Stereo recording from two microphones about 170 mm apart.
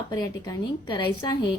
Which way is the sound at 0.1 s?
20° left (ahead or behind).